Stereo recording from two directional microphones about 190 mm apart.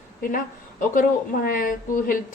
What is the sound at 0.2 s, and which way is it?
A woman's voice, 45° left (ahead or behind).